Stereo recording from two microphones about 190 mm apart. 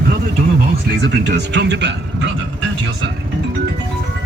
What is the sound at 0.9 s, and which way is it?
Speech, 60° right (ahead or behind).